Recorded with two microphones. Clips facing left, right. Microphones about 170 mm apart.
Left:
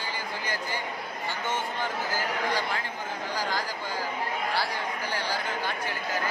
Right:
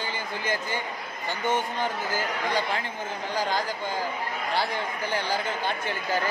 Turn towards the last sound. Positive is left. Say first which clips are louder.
# right 3 dB
turn(degrees=-25)  # may be behind; listen again after turning